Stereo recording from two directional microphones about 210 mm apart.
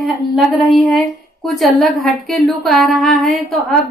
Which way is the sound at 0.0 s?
Centre (ahead or behind).